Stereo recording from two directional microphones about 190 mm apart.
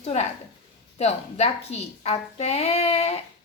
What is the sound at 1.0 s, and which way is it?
A woman's voice, 35° left (ahead or behind).